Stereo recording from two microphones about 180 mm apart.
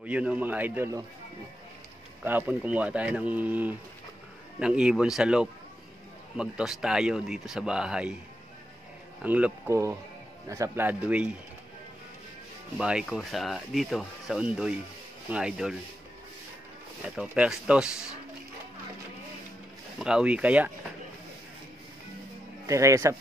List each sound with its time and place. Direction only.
0.0 s speech: 5° right (ahead or behind)
2.2 s speech: 10° right (ahead or behind)
9.2 s speech: 10° right (ahead or behind)
12.7 s speech: 5° right (ahead or behind)
17.0 s speech: 5° right (ahead or behind)
20.0 s speech: 5° right (ahead or behind)
22.7 s speech: 15° right (ahead or behind)